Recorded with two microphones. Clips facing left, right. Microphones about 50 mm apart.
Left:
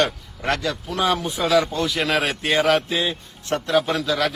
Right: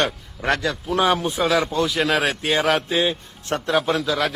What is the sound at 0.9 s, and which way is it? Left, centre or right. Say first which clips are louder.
Speech: right 3 dB; right.